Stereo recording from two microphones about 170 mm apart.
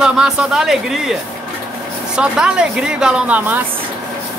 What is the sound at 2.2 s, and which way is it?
Speech, 5° right (ahead or behind).